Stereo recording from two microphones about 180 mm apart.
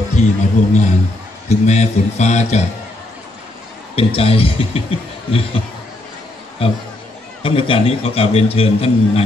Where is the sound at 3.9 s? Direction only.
35° left (ahead or behind).